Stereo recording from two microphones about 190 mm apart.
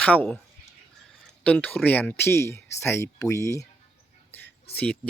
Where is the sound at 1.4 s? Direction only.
5° left (ahead or behind).